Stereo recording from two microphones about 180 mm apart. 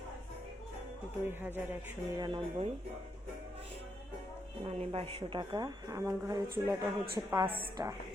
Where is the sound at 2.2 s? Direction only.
25° right (ahead or behind).